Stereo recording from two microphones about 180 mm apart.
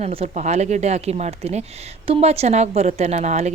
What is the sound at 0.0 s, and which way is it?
Speech, 35° right (ahead or behind).